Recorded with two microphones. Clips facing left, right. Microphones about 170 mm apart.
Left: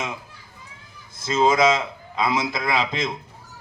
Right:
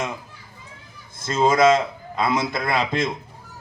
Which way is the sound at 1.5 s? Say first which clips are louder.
Right 4 dB; 50° right (ahead or behind).